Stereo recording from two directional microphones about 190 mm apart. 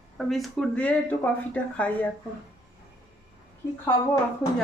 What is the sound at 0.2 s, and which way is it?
Speech, centre (ahead or behind).